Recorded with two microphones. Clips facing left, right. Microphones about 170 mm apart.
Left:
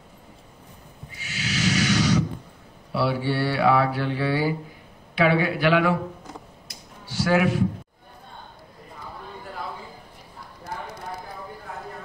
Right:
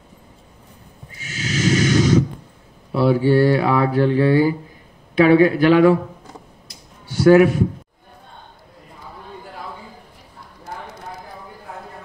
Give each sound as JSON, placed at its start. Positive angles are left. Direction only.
{"t": 1.2, "sound": "snort", "side_deg": -45}
{"t": 2.9, "sound": "a man's voice", "side_deg": -45}
{"t": 7.1, "sound": "a man's voice", "side_deg": -50}